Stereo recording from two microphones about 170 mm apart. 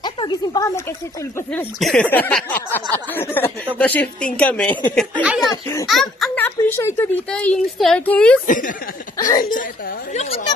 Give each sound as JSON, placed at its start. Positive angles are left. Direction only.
{"t": 0.0, "sound": "a sound", "side_deg": 25}
{"t": 1.8, "sound": "a woman's voice", "side_deg": 5}
{"t": 5.2, "sound": "speech", "side_deg": -5}
{"t": 6.4, "sound": "a woman's voice", "side_deg": 15}
{"t": 8.5, "sound": "a woman's voice", "side_deg": 50}